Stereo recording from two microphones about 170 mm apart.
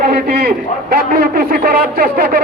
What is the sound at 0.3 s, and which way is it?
A man's voice, 70° right (ahead or behind).